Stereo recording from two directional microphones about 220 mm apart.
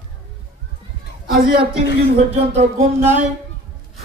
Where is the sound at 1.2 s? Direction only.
45° right (ahead or behind).